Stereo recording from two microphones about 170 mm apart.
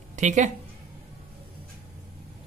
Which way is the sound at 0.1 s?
45° right (ahead or behind).